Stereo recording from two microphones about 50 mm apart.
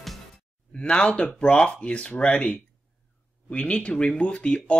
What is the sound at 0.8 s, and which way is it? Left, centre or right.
Speech, left.